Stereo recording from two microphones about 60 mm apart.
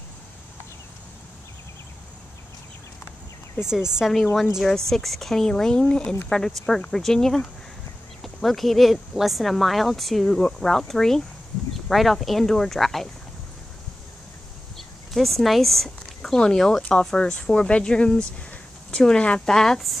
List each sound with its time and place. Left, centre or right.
3.6 s speech: left
4.0 s speech: centre
14.8 s a sound: centre
16.3 s speech: centre